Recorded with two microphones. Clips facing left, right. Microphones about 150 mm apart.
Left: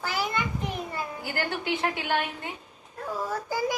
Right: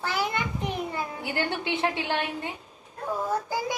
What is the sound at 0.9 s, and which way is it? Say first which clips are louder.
A woman's voice: right 2 dB; 20° right (ahead or behind).